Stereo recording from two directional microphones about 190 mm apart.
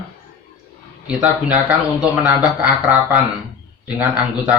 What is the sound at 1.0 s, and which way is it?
Speech, 5° right (ahead or behind).